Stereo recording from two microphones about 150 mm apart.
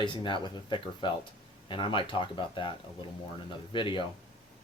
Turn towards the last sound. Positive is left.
turn(degrees=35)  # may be behind; listen again after turning